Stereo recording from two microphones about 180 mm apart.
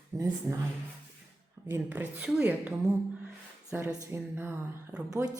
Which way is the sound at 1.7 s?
10° right (ahead or behind).